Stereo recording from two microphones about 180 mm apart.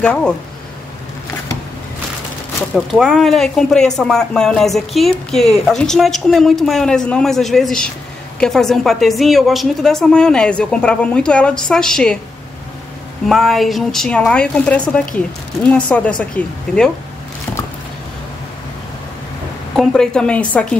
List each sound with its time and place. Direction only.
0.0 s speech: 10° left (ahead or behind)
2.7 s speech: centre (ahead or behind)
13.3 s speech: centre (ahead or behind)
19.7 s speech: 5° left (ahead or behind)